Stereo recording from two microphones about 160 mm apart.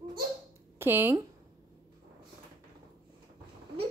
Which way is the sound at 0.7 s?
15° right (ahead or behind).